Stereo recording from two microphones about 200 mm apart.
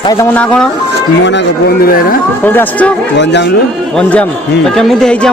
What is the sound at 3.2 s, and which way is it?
Speech, 60° left (ahead or behind).